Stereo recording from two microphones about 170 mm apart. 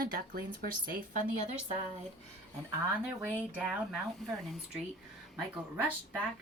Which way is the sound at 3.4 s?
10° right (ahead or behind).